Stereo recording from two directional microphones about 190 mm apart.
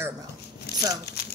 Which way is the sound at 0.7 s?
60° left (ahead or behind).